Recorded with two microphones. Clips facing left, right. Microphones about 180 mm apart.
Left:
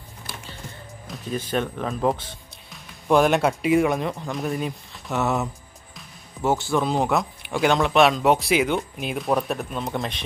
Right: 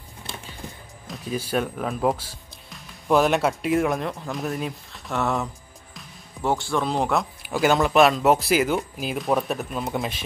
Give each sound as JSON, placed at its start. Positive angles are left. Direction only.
{"t": 1.0, "sound": "speech", "side_deg": -5}